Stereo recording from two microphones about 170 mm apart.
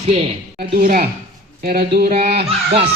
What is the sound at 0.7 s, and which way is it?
Speech, 60° right (ahead or behind).